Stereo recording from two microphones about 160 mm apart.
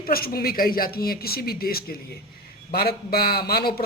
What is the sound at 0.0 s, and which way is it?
Speech, 65° left (ahead or behind).